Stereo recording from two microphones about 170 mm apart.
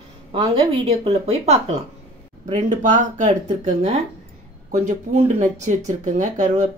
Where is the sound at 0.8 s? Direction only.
40° right (ahead or behind).